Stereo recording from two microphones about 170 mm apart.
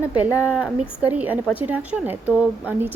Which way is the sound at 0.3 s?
5° right (ahead or behind).